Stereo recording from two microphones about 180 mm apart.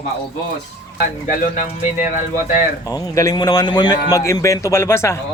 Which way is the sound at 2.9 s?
20° left (ahead or behind).